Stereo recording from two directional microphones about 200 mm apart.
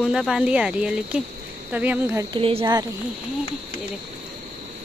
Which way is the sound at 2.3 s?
25° right (ahead or behind).